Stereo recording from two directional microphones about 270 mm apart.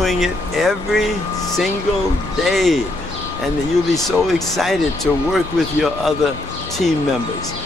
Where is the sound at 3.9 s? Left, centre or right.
Centre.